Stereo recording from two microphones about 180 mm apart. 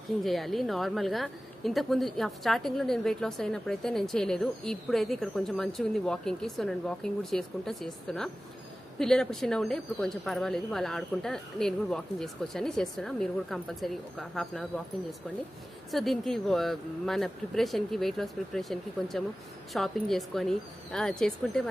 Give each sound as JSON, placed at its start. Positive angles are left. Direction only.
{"t": 0.2, "sound": "a woman's voice", "side_deg": 0}
{"t": 15.9, "sound": "a woman's voice", "side_deg": 0}